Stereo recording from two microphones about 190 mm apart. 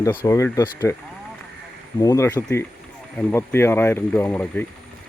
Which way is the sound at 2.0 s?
15° left (ahead or behind).